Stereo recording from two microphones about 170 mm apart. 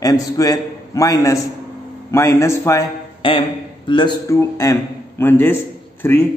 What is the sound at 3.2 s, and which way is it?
A man's voice, 30° left (ahead or behind).